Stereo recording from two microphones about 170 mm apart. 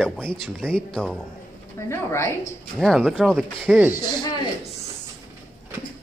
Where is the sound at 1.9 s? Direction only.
15° left (ahead or behind).